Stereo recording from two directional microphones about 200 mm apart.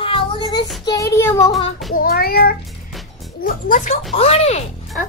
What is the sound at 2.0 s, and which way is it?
Speech, 50° left (ahead or behind).